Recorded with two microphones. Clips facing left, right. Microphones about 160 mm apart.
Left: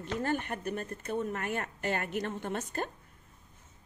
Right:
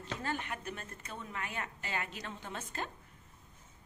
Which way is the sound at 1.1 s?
55° left (ahead or behind).